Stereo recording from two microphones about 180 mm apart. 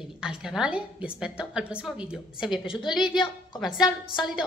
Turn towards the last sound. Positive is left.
turn(degrees=25)  # may be behind; listen again after turning